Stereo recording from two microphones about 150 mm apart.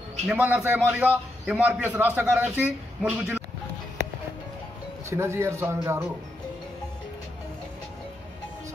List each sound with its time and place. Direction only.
0.3 s a man's voice: 10° right (ahead or behind)
5.1 s a man's voice: 15° right (ahead or behind)